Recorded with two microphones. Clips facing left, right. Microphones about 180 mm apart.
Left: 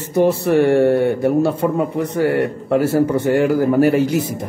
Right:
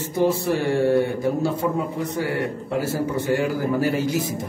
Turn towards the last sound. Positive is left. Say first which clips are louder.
# left 7 dB
turn(degrees=60)  # may be behind; listen again after turning